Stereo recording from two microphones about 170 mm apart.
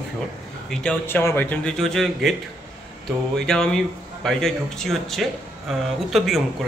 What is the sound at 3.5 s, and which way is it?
Speech, 5° left (ahead or behind).